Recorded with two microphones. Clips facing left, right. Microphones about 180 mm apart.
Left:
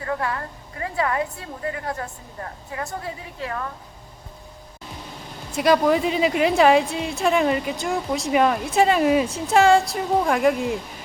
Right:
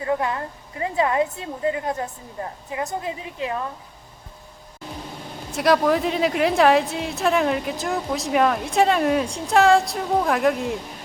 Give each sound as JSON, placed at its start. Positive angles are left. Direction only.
{"t": 0.0, "sound": "a woman's voice", "side_deg": -20}
{"t": 5.5, "sound": "a woman's voice", "side_deg": 0}